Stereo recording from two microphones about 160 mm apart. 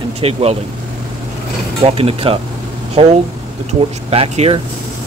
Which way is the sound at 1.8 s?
35° right (ahead or behind).